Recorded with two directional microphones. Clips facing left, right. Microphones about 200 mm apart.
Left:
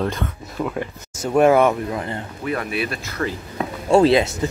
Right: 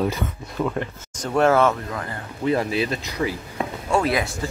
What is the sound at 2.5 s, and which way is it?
Speech, 25° right (ahead or behind).